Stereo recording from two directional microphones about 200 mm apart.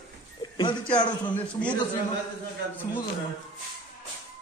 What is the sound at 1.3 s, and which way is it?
Music, 5° left (ahead or behind).